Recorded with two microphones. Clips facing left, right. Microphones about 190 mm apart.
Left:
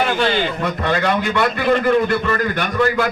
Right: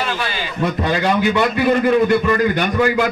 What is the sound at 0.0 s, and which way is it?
Speech, 60° left (ahead or behind).